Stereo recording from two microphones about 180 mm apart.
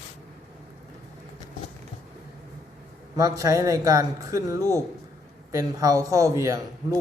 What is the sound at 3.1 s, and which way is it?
Speech, 20° right (ahead or behind).